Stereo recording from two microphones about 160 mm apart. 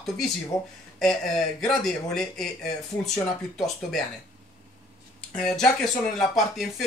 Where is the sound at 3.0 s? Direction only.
Centre (ahead or behind).